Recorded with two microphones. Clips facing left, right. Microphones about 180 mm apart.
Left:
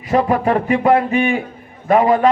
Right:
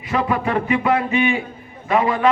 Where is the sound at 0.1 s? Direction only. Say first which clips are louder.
Left 5 dB; 40° left (ahead or behind).